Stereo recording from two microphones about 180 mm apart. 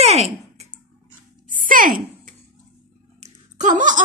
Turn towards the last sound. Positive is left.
turn(degrees=-45)  # may be behind; listen again after turning